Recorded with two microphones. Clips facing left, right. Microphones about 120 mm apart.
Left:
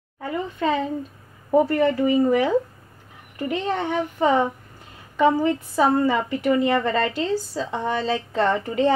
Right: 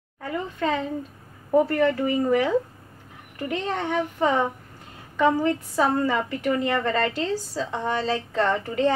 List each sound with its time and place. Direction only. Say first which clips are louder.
0.2 s a child's voice: left 2 dB; 20° left (ahead or behind)